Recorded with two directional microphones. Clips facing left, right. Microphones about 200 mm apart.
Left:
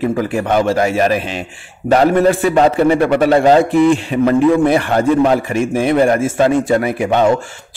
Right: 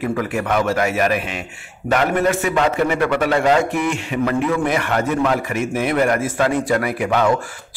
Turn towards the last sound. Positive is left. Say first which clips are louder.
# left 4 dB
turn(degrees=25)  # may be behind; listen again after turning